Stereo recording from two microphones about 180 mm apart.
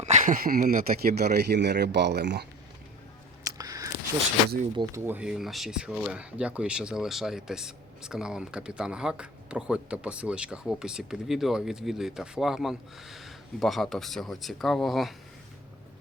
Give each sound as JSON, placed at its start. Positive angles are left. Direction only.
{"t": 0.0, "sound": "speech", "side_deg": -40}
{"t": 1.2, "sound": "speech", "side_deg": -65}
{"t": 3.4, "sound": "a sound", "side_deg": -20}
{"t": 4.8, "sound": "speech", "side_deg": -15}